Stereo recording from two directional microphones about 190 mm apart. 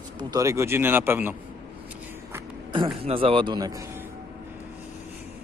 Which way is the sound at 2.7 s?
30° right (ahead or behind).